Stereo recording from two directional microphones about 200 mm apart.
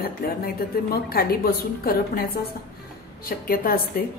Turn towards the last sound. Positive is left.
turn(degrees=45)  # may be behind; listen again after turning